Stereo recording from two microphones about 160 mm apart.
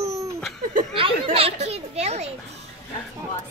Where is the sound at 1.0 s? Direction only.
35° right (ahead or behind).